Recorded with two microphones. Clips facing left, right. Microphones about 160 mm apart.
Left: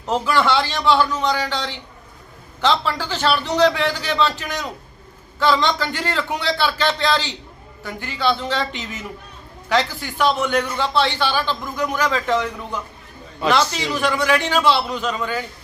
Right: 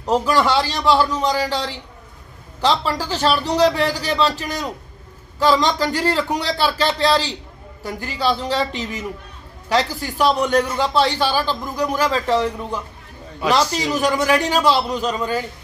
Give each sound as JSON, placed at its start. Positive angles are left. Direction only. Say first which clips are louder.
{"t": 0.0, "sound": "a man's voice", "louder": "right 2 dB", "side_deg": -40}
{"t": 13.5, "sound": "a man's voice", "louder": "right 1 dB", "side_deg": -35}